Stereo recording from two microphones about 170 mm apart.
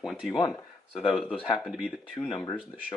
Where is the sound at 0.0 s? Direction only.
Centre (ahead or behind).